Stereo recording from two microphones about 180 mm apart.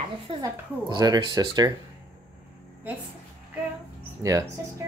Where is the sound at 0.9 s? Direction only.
25° right (ahead or behind).